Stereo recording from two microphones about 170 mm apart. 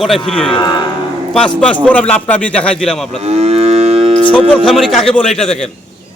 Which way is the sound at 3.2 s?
40° right (ahead or behind).